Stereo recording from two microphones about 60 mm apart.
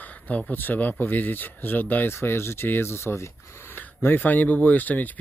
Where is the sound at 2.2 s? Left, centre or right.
Left.